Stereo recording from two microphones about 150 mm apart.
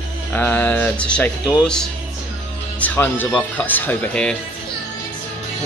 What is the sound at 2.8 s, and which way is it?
Speech, 10° left (ahead or behind).